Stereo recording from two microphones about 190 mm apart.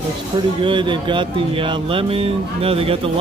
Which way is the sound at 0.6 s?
25° right (ahead or behind).